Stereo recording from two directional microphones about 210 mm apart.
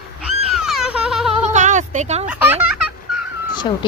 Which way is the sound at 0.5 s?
Centre (ahead or behind).